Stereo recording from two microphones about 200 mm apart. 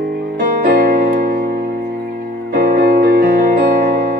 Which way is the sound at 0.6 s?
45° right (ahead or behind).